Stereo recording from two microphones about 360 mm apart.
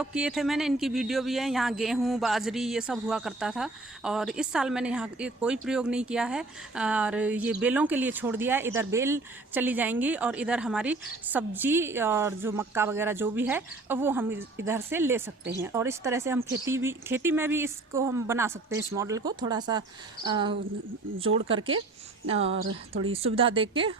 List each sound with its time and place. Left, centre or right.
0.0 s speech: centre
21.2 s speech: right
23.1 s speech: centre